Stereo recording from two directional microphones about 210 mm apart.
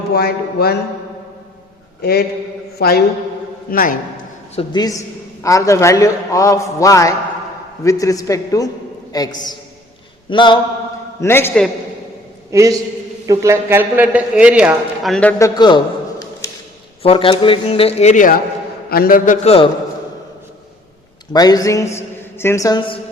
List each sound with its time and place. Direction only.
0.1 s a sound: 50° left (ahead or behind)
2.0 s a man's voice: 50° left (ahead or behind)
2.7 s a sound: 50° left (ahead or behind)
4.5 s a man's voice: 20° left (ahead or behind)
11.2 s a man's voice: 10° left (ahead or behind)
12.5 s a man's voice: 15° right (ahead or behind); by 19.7 s 30° left (ahead or behind)
21.3 s a man's voice: 15° left (ahead or behind)